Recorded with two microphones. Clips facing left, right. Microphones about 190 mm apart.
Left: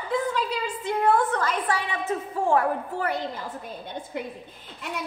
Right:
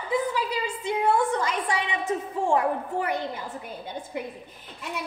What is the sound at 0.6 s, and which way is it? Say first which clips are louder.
A woman's voice: left 2 dB; 10° right (ahead or behind).